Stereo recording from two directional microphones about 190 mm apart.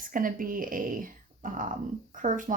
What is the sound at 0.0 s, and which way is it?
Speech, 45° right (ahead or behind).